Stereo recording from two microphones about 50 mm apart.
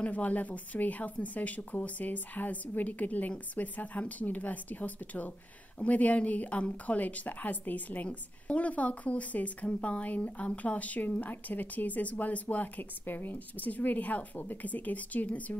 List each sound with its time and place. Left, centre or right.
0.0 s speech: left